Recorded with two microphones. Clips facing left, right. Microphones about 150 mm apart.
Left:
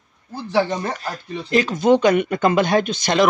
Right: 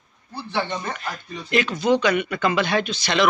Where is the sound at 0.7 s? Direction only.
35° left (ahead or behind).